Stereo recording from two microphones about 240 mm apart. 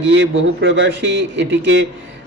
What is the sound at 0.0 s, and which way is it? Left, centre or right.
A man's voice, right.